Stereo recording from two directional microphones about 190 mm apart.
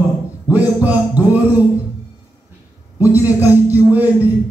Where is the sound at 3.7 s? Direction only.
10° right (ahead or behind).